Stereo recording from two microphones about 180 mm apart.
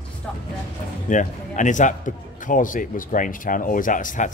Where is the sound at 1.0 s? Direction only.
45° left (ahead or behind).